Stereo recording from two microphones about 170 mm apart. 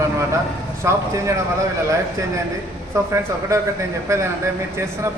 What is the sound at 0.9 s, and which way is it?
Speech, 15° right (ahead or behind).